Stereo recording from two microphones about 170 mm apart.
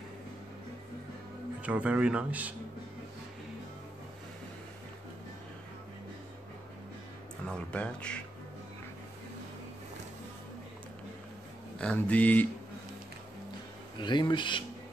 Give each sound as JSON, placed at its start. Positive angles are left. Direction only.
{"t": 1.6, "sound": "speech", "side_deg": -10}
{"t": 7.4, "sound": "speech", "side_deg": 5}
{"t": 11.8, "sound": "speech", "side_deg": 10}
{"t": 13.9, "sound": "a man's voice", "side_deg": 25}